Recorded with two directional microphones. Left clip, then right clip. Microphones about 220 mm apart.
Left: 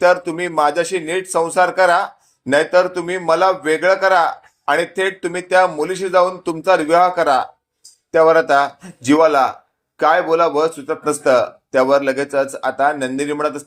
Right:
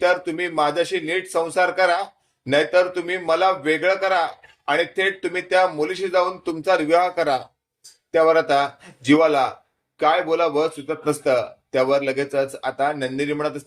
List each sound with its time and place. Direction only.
0.0 s a man's voice: 25° left (ahead or behind)